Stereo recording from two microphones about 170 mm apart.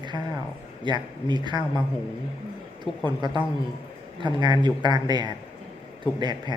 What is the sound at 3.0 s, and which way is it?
Speech, 25° right (ahead or behind).